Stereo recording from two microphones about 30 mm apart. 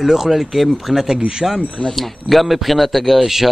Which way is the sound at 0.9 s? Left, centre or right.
Right.